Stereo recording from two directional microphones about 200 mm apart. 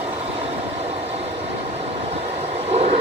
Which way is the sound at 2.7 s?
30° right (ahead or behind).